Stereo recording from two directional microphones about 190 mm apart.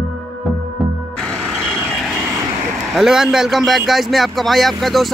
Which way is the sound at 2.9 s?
Centre (ahead or behind).